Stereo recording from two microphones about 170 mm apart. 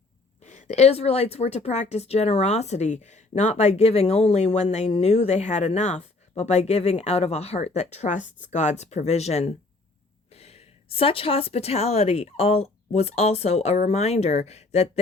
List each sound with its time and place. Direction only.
0.4 s a woman's voice: 40° left (ahead or behind)